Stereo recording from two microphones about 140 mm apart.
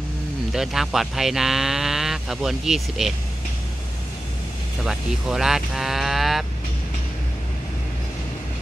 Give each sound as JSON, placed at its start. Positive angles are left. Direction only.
{"t": 0.5, "sound": "speech", "side_deg": 0}
{"t": 4.8, "sound": "speech", "side_deg": -5}